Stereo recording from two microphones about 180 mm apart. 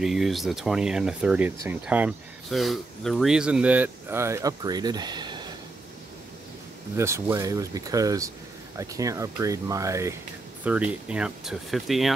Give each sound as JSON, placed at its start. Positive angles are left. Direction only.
{"t": 0.0, "sound": "speech", "side_deg": 0}
{"t": 7.0, "sound": "speech", "side_deg": -15}